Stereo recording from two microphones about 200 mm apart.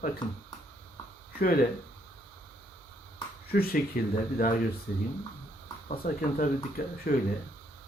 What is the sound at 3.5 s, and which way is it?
Speech, 50° left (ahead or behind).